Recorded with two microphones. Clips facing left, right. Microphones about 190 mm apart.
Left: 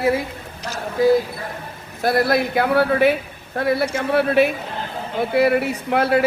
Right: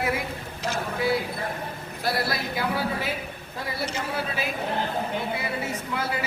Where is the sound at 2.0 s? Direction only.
50° left (ahead or behind).